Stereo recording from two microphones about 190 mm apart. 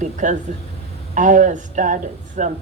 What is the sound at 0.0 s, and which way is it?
Speech, 40° right (ahead or behind).